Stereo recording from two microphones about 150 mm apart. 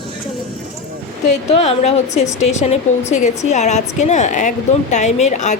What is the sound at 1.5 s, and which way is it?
A woman's voice, 45° left (ahead or behind).